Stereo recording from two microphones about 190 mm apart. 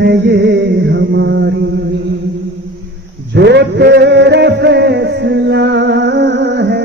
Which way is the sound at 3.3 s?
65° right (ahead or behind).